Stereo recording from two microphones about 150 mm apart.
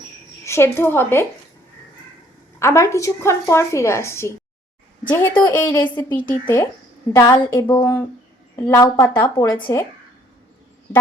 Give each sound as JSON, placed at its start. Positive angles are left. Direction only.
{"t": 0.4, "sound": "a woman's voice", "side_deg": 15}
{"t": 2.6, "sound": "a woman's voice", "side_deg": 20}